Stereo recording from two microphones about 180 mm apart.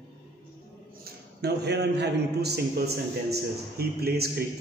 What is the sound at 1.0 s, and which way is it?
A man's voice, 65° right (ahead or behind).